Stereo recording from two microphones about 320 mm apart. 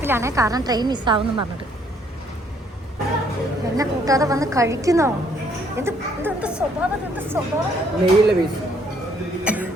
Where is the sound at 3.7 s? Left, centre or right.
Centre.